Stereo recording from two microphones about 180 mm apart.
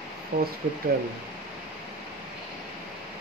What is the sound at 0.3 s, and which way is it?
Speech, 50° right (ahead or behind).